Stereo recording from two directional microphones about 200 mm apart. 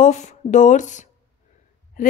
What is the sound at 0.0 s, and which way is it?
Speech, 35° left (ahead or behind).